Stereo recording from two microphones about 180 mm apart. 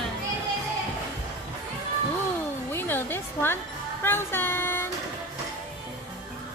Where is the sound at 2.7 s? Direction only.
10° left (ahead or behind).